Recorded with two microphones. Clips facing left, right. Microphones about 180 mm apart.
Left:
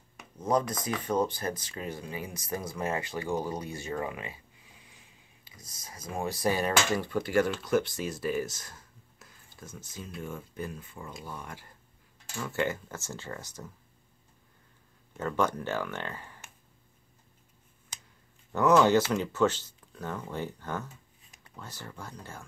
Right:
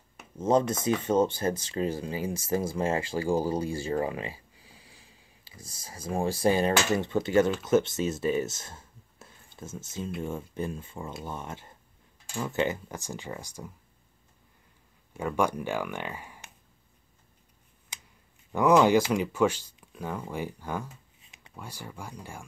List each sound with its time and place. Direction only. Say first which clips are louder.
0.4 s speech: right 4 dB; 25° right (ahead or behind)
15.1 s speech: right 2 dB; 10° right (ahead or behind)
18.5 s speech: right 2 dB; 15° right (ahead or behind)